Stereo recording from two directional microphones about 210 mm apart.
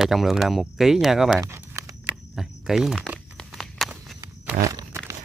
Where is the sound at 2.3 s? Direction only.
Centre (ahead or behind).